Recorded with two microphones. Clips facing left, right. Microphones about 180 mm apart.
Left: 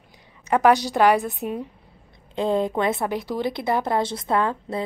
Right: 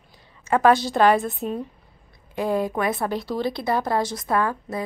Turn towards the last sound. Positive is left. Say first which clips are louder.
# left 1 dB
turn(degrees=25)  # may be behind; listen again after turning